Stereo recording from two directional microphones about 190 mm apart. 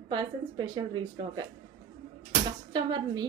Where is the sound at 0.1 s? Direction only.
25° right (ahead or behind).